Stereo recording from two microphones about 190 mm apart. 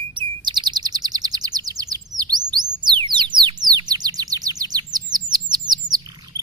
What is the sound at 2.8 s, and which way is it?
Bird, 25° right (ahead or behind).